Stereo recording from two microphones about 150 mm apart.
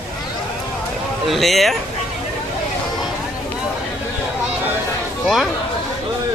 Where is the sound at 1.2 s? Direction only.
Centre (ahead or behind).